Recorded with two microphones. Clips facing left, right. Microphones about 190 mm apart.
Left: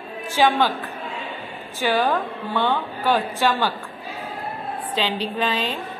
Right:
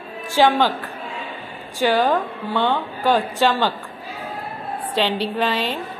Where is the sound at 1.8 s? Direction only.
15° right (ahead or behind).